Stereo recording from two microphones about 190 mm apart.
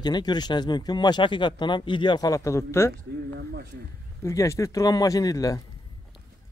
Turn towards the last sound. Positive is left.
turn(degrees=20)  # may be behind; listen again after turning